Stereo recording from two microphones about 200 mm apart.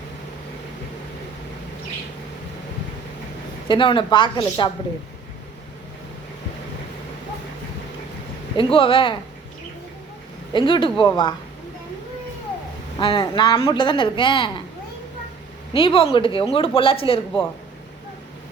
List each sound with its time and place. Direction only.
3.7 s speech: 25° left (ahead or behind)
8.5 s speech: 25° left (ahead or behind)
10.5 s speech: 25° left (ahead or behind)
13.0 s speech: 25° left (ahead or behind)
15.7 s speech: 25° left (ahead or behind)